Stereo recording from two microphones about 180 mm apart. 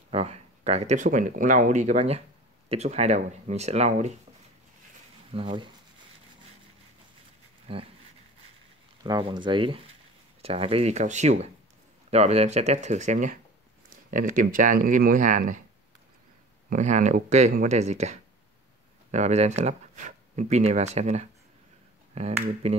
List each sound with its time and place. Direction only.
0.1 s speech: 35° right (ahead or behind)
5.3 s speech: 30° right (ahead or behind)
7.7 s speech: 30° right (ahead or behind)
9.0 s speech: 25° right (ahead or behind); by 15.6 s 45° right (ahead or behind)
16.6 s speech: 40° right (ahead or behind)
19.1 s speech: 40° right (ahead or behind)